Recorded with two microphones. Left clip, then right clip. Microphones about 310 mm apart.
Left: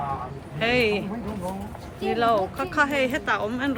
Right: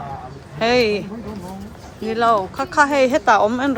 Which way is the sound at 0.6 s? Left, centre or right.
Centre.